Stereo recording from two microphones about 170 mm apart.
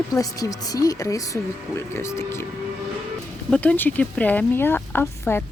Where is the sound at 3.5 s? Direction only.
10° left (ahead or behind).